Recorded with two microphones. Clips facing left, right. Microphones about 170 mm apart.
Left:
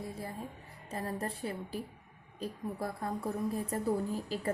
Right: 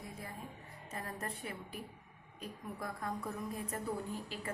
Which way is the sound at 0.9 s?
30° left (ahead or behind).